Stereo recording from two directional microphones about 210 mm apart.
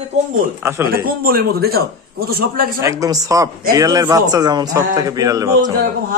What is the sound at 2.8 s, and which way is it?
Speech, 15° right (ahead or behind).